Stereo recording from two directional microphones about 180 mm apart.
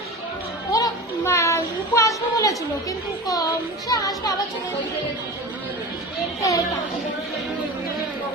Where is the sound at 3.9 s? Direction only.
20° left (ahead or behind).